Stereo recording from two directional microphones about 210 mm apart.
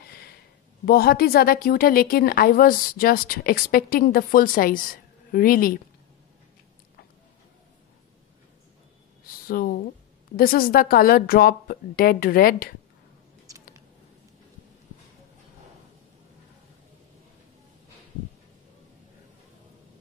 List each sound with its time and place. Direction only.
0.8 s a woman's voice: 45° left (ahead or behind)
9.5 s a woman's voice: 45° left (ahead or behind)